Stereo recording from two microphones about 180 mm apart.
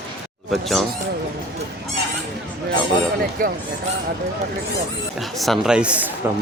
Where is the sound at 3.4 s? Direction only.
50° right (ahead or behind).